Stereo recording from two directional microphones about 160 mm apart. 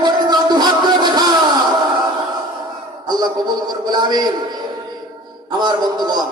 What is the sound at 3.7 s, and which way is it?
Speech, 25° right (ahead or behind).